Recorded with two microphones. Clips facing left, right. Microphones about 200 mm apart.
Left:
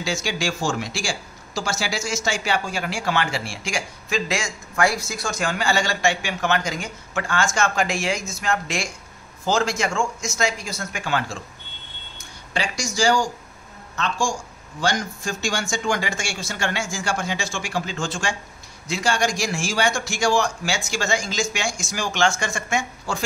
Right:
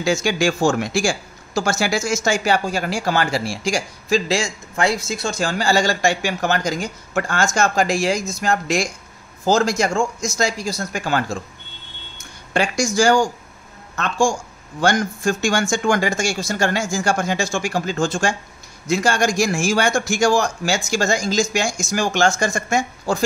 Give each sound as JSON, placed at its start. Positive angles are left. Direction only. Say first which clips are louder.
{"t": 0.0, "sound": "speech", "louder": "right 7 dB", "side_deg": -50}
{"t": 12.5, "sound": "speech", "louder": "right 7 dB", "side_deg": -50}